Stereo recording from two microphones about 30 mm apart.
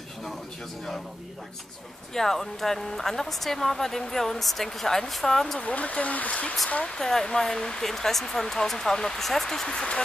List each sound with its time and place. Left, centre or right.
2.1 s speech: centre
5.6 s speech: left
6.8 s speech: left
7.9 s speech: centre
9.7 s speech: left